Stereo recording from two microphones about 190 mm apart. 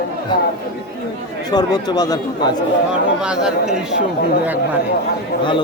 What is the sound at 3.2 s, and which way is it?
Speech, 5° right (ahead or behind).